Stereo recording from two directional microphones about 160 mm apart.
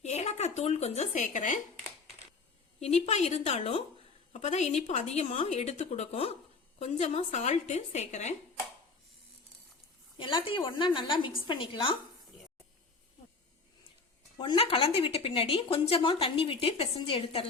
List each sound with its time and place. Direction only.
0.0 s a woman's voice: 45° left (ahead or behind)
2.8 s a woman's voice: 40° left (ahead or behind)
10.2 s a woman's voice: 30° left (ahead or behind)
14.3 s a woman's voice: 30° left (ahead or behind)